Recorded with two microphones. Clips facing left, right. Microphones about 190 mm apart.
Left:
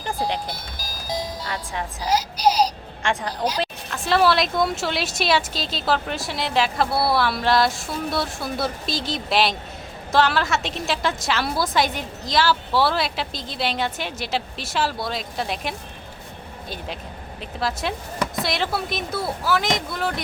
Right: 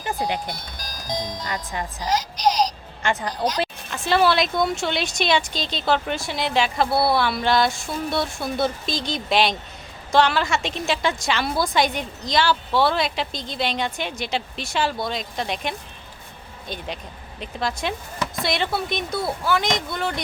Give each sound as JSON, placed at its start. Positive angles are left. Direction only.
{"t": 0.0, "sound": "music", "side_deg": 0}
{"t": 3.6, "sound": "a woman's voice", "side_deg": 0}